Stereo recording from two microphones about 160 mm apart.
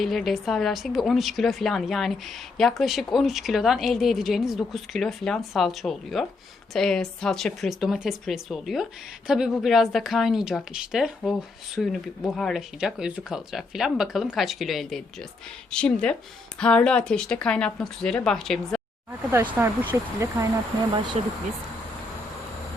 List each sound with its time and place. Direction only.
0.0 s a woman's voice: centre (ahead or behind)
19.3 s speech: 15° right (ahead or behind)
21.2 s speech: 40° right (ahead or behind)